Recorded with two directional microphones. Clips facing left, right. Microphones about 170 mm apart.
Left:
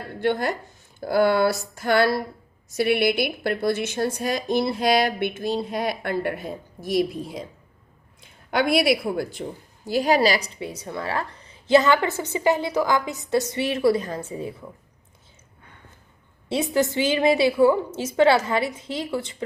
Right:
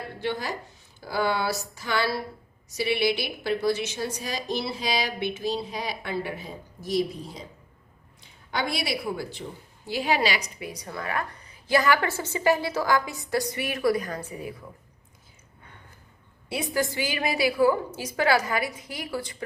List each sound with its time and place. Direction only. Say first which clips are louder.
0.2 s a woman's voice: left 8 dB; 55° left (ahead or behind)
8.4 s a woman's voice: left 9 dB; 60° left (ahead or behind)
9.8 s a woman's voice: left 6 dB; 40° left (ahead or behind); by 14.5 s 25° left (ahead or behind)
16.5 s a woman's voice: left 5 dB; 25° left (ahead or behind)